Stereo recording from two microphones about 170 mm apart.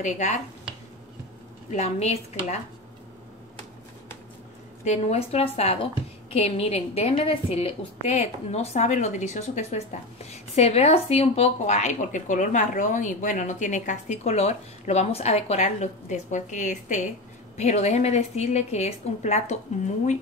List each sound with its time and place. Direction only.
0.0 s speech: 45° left (ahead or behind)
1.7 s a woman's voice: 40° left (ahead or behind)
4.8 s a woman's voice: 40° left (ahead or behind)